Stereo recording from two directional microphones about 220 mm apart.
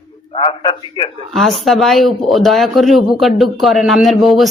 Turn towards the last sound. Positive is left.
turn(degrees=0)  # may be behind; listen again after turning